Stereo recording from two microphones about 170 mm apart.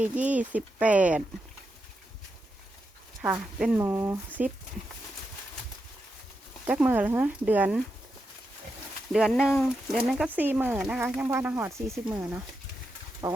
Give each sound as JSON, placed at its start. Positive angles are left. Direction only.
{"t": 0.0, "sound": "speech", "side_deg": -10}
{"t": 3.2, "sound": "speech", "side_deg": -10}
{"t": 6.7, "sound": "speech", "side_deg": -10}
{"t": 9.1, "sound": "speech", "side_deg": -5}